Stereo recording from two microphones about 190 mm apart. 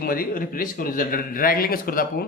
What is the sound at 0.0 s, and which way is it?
A man's voice, 50° left (ahead or behind).